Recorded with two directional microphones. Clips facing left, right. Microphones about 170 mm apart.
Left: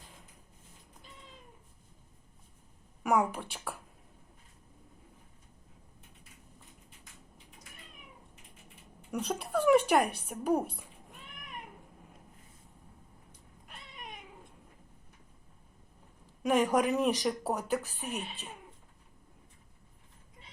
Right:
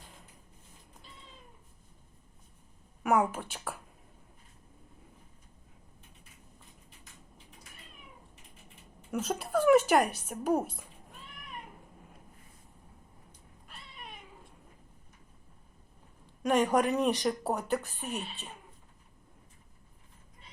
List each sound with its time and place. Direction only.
3.0 s speech: centre (ahead or behind)
9.1 s speech: 5° right (ahead or behind)
13.7 s cat: 15° left (ahead or behind)
16.4 s speech: centre (ahead or behind)